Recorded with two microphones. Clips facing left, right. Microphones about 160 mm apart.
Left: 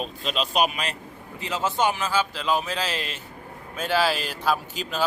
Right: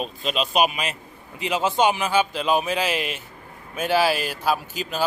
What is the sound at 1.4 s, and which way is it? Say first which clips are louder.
A man's voice: right 4 dB; 15° right (ahead or behind).